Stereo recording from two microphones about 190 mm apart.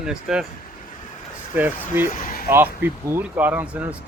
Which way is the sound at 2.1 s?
50° left (ahead or behind).